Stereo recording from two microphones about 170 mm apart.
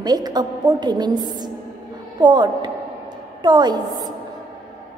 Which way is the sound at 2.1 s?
25° right (ahead or behind).